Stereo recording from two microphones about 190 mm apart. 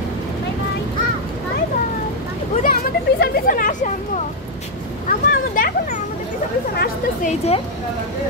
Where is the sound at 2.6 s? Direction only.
50° left (ahead or behind).